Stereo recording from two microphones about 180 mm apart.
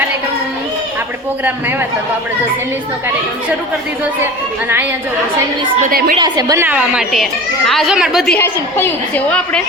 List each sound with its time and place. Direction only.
6.1 s a woman's voice: 25° right (ahead or behind)
6.7 s speech: 5° right (ahead or behind)
8.4 s a woman's voice: 10° left (ahead or behind)